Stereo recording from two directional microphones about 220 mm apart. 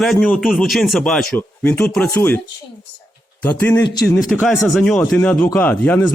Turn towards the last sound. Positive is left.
turn(degrees=10)  # may be behind; listen again after turning